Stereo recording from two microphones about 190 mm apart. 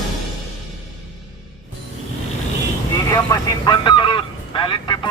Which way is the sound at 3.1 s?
20° left (ahead or behind).